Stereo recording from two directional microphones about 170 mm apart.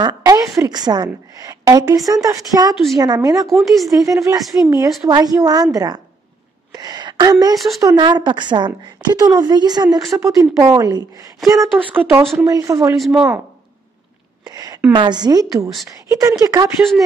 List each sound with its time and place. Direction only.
0.0 s a woman's voice: 20° right (ahead or behind)
3.4 s a woman's voice: centre (ahead or behind)
4.0 s a woman's voice: 20° right (ahead or behind)
7.5 s a woman's voice: centre (ahead or behind)
7.8 s a woman's voice: 25° right (ahead or behind)
14.4 s a sound: 25° right (ahead or behind)
15.0 s a woman's voice: 25° right (ahead or behind)